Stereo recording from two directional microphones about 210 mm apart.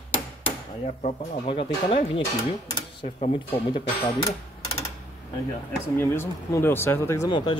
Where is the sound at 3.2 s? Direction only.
25° left (ahead or behind).